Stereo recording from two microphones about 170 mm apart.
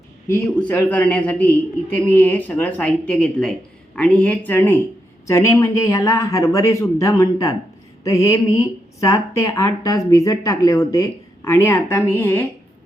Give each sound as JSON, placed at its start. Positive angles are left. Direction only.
{"t": 0.3, "sound": "speech", "side_deg": 10}